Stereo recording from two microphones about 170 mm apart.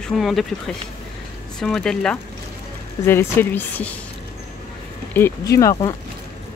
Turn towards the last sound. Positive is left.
turn(degrees=20)  # may be behind; listen again after turning